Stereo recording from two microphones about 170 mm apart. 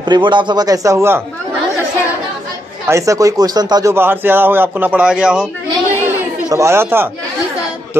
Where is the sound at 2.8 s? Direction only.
20° right (ahead or behind).